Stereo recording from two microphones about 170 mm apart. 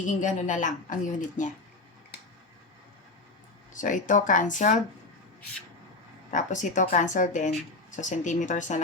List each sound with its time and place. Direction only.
0.1 s a woman's voice: 45° left (ahead or behind)
3.7 s a woman's voice: 50° left (ahead or behind)
6.3 s a woman's voice: 45° left (ahead or behind)